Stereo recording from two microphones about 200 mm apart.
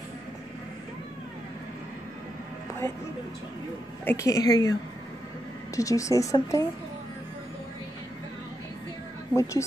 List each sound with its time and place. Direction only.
4.0 s speech: 15° left (ahead or behind)
5.8 s speech: 15° left (ahead or behind)
9.3 s speech: 15° left (ahead or behind)